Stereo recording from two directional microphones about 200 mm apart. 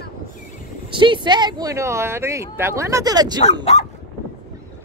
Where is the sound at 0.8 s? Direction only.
25° right (ahead or behind).